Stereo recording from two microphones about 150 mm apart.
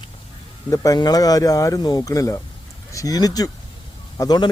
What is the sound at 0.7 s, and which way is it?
Speech, 25° left (ahead or behind).